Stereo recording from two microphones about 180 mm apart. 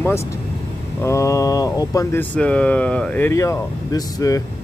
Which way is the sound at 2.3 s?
5° left (ahead or behind).